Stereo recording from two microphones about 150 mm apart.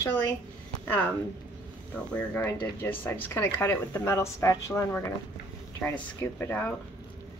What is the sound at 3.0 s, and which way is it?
A woman's voice, 15° left (ahead or behind).